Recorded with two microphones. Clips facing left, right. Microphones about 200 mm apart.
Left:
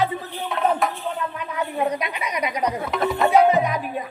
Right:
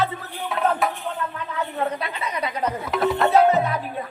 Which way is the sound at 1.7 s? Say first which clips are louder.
Left 3 dB; 15° left (ahead or behind).